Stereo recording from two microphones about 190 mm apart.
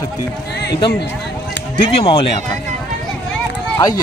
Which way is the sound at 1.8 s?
30° left (ahead or behind).